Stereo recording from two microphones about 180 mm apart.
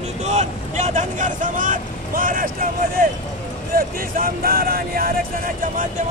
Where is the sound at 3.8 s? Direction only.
55° right (ahead or behind).